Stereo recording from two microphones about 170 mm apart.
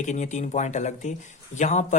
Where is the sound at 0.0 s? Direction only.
45° left (ahead or behind).